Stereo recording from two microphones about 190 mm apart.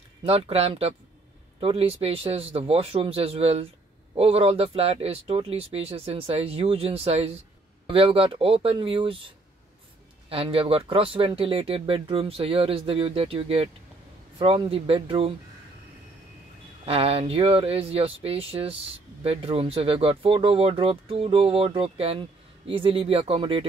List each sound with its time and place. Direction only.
0.2 s speech: 30° right (ahead or behind)
10.3 s speech: 30° right (ahead or behind)
16.8 s speech: 30° right (ahead or behind)